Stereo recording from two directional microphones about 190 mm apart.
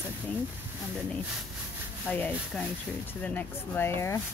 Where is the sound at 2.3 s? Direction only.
5° right (ahead or behind).